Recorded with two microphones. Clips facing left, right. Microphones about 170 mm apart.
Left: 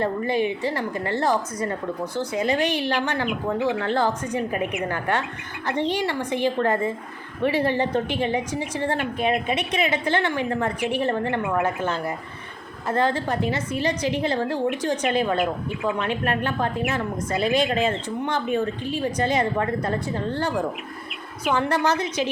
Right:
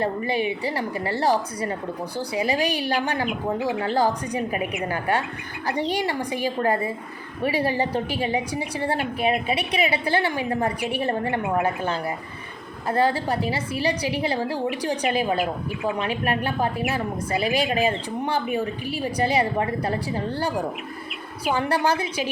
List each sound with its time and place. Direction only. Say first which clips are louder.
0.0 s speech: left 1 dB; 10° right (ahead or behind)
3.8 s a woman's voice: right 1 dB; 40° right (ahead or behind)
4.3 s speech: left 1 dB; 10° right (ahead or behind)
11.4 s speech: right 1 dB; centre (ahead or behind)
12.9 s speech: right 1 dB; 10° right (ahead or behind)
21.5 s speech: even; 10° right (ahead or behind)